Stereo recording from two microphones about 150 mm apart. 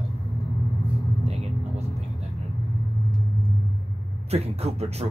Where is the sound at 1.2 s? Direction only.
45° right (ahead or behind).